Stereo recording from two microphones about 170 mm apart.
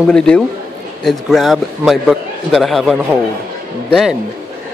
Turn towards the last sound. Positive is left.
turn(degrees=0)  # may be behind; listen again after turning